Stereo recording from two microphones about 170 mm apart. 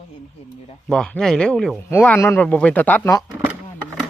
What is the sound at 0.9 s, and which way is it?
Speech, 5° left (ahead or behind).